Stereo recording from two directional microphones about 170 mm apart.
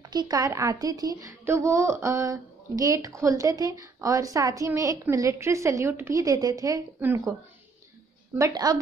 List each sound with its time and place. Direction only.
0.1 s a child's voice: 20° right (ahead or behind)
8.4 s a child's voice: 20° right (ahead or behind)